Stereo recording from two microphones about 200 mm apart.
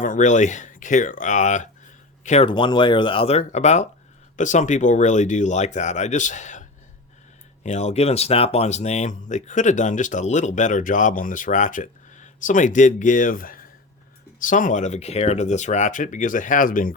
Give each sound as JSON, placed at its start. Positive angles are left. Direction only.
{"t": 0.0, "sound": "speech", "side_deg": 40}